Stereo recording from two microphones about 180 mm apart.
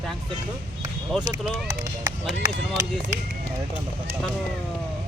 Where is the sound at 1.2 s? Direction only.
20° right (ahead or behind).